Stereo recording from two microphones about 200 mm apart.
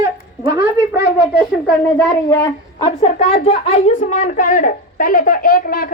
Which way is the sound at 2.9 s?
30° left (ahead or behind).